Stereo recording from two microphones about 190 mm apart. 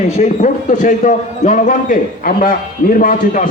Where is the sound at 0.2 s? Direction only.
40° left (ahead or behind).